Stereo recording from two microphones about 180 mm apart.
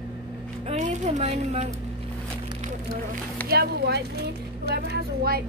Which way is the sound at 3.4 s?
60° right (ahead or behind).